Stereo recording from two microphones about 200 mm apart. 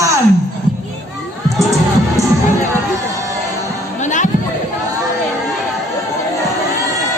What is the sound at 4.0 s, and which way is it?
Music, 35° left (ahead or behind).